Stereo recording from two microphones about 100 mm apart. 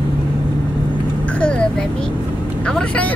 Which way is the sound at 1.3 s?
10° left (ahead or behind).